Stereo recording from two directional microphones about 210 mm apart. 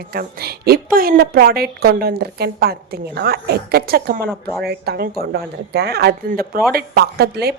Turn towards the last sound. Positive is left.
turn(degrees=-50)  # may be behind; listen again after turning